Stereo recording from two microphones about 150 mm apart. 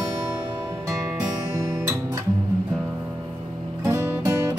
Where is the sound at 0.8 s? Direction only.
20° right (ahead or behind).